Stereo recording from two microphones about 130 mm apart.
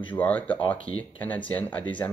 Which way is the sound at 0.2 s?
10° left (ahead or behind).